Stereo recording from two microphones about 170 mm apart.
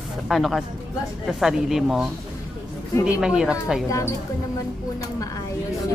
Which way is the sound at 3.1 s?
5° right (ahead or behind).